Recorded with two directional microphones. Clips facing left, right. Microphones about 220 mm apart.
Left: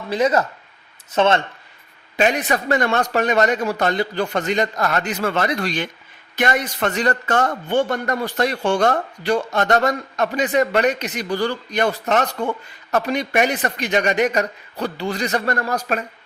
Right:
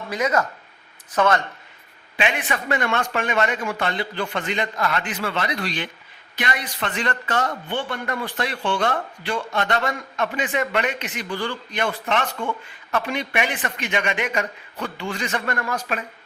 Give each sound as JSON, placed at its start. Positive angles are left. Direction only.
{"t": 0.1, "sound": "speech", "side_deg": 30}
{"t": 2.1, "sound": "speech", "side_deg": 40}